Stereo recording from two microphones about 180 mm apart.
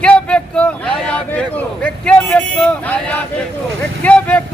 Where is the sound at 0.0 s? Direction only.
5° left (ahead or behind).